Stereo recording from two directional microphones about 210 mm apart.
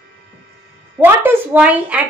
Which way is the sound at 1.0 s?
10° right (ahead or behind).